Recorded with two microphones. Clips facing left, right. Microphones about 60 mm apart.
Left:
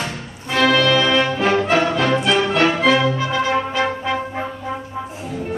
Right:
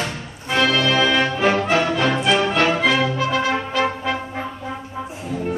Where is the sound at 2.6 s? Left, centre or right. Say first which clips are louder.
Left 2 dB; centre.